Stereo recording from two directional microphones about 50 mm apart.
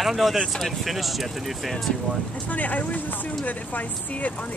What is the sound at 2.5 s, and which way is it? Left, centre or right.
Speech, left.